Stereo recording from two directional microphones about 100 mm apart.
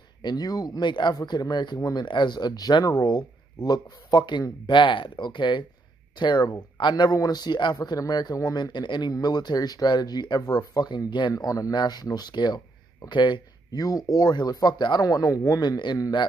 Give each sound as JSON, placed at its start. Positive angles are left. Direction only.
{"t": 0.2, "sound": "speech", "side_deg": 40}
{"t": 1.8, "sound": "speech", "side_deg": 35}
{"t": 2.0, "sound": "speech", "side_deg": 50}
{"t": 11.3, "sound": "speech", "side_deg": 35}